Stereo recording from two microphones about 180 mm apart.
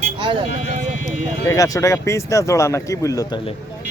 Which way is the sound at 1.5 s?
20° left (ahead or behind).